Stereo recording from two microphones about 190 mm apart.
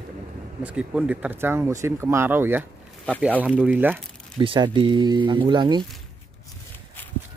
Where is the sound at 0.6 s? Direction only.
5° right (ahead or behind).